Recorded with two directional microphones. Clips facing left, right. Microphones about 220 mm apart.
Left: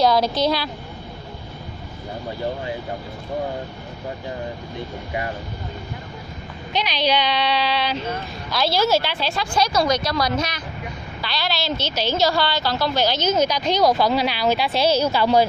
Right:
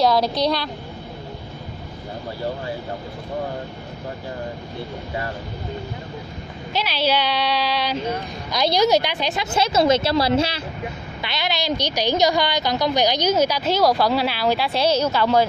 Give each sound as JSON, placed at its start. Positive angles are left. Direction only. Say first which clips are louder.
{"t": 0.0, "sound": "a woman's voice", "louder": "even", "side_deg": 0}
{"t": 6.7, "sound": "a woman's voice", "louder": "even", "side_deg": -5}